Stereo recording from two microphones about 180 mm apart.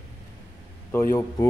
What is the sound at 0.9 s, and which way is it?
Speech, 15° left (ahead or behind).